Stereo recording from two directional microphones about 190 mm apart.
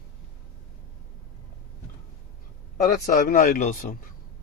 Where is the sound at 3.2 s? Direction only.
45° left (ahead or behind).